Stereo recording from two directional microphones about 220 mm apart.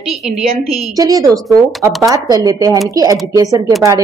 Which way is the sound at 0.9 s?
15° right (ahead or behind).